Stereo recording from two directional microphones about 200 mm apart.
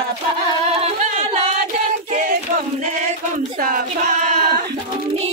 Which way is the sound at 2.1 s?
40° right (ahead or behind).